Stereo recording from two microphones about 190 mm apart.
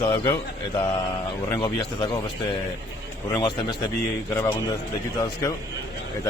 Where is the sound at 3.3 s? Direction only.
20° left (ahead or behind).